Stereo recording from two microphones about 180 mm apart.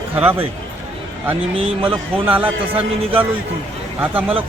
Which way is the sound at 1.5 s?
30° right (ahead or behind).